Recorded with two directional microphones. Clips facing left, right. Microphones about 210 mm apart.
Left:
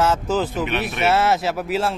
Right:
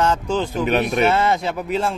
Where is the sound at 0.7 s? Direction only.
40° right (ahead or behind).